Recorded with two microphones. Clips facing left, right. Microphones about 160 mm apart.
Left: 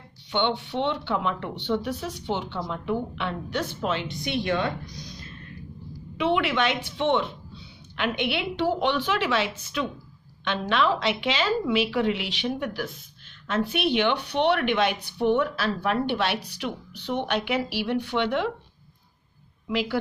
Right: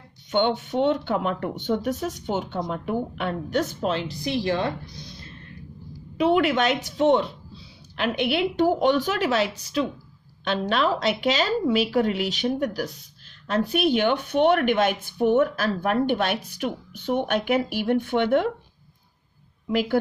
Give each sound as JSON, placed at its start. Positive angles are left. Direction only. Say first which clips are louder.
{"t": 0.3, "sound": "a woman's voice", "louder": "right 3 dB", "side_deg": -45}
{"t": 6.1, "sound": "a woman's voice", "louder": "right 4 dB", "side_deg": -40}
{"t": 19.7, "sound": "a woman's voice", "louder": "right 4 dB", "side_deg": -50}